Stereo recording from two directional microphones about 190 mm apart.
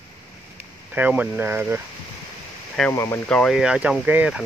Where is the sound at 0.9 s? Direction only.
10° right (ahead or behind).